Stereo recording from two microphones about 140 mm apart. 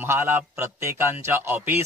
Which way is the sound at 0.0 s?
15° right (ahead or behind).